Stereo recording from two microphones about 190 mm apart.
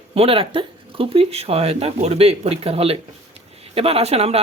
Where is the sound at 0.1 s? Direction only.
30° right (ahead or behind).